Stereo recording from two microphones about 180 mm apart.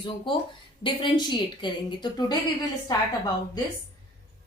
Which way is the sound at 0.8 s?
25° left (ahead or behind).